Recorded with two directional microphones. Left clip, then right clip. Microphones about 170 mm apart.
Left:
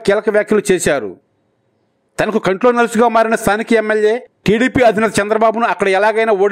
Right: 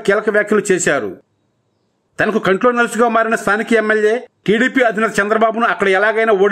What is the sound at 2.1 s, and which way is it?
A man's voice, 30° left (ahead or behind).